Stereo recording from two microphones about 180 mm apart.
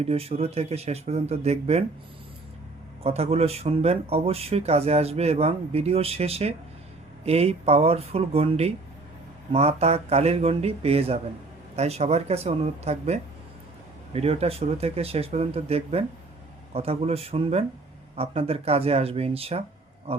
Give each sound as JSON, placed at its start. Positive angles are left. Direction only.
{"t": 0.1, "sound": "speech", "side_deg": -35}
{"t": 3.0, "sound": "speech", "side_deg": -35}